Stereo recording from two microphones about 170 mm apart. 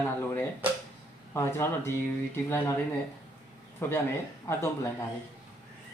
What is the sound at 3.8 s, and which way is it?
Speech, 15° left (ahead or behind).